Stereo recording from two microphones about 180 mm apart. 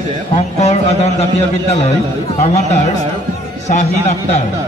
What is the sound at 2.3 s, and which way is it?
A man's voice, 40° left (ahead or behind).